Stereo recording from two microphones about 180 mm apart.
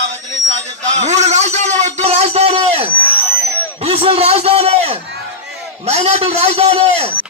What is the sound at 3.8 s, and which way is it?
A man's voice, 35° right (ahead or behind).